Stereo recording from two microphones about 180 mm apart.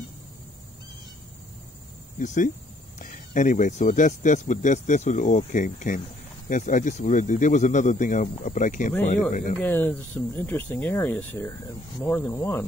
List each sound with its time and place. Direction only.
2.1 s speech: 45° left (ahead or behind)
9.6 s speech: 10° left (ahead or behind)